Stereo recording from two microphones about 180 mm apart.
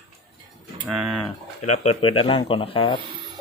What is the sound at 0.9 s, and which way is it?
Speech, centre (ahead or behind).